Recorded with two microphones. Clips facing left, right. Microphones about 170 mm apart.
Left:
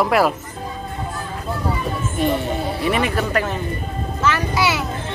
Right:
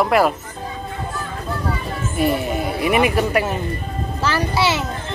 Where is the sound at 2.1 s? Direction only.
10° right (ahead or behind).